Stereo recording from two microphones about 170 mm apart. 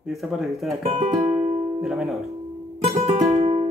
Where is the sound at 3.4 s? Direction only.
25° right (ahead or behind).